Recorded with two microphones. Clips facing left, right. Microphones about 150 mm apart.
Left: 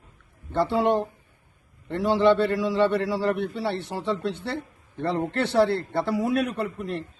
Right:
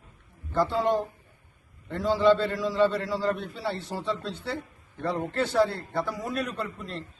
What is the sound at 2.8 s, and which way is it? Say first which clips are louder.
Speech: left 1 dB; 25° left (ahead or behind).